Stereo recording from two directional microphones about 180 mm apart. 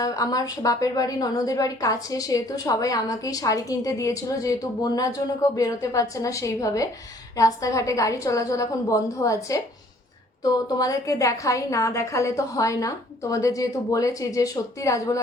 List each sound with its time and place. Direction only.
0.0 s a woman's voice: 20° left (ahead or behind)